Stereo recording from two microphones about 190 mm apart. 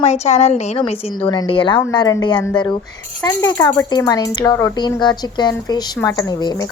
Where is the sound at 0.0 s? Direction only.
35° left (ahead or behind).